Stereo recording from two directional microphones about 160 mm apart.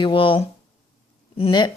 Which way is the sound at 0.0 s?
30° left (ahead or behind).